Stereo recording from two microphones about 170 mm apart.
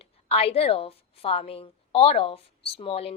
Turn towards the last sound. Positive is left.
turn(degrees=35)  # may be behind; listen again after turning